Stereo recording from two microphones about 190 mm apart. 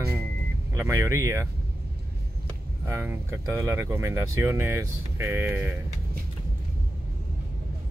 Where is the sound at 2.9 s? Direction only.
10° right (ahead or behind).